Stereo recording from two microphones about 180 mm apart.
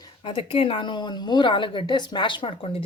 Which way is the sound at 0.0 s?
25° left (ahead or behind).